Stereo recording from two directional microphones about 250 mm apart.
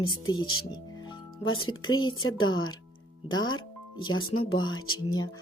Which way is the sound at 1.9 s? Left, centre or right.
Centre.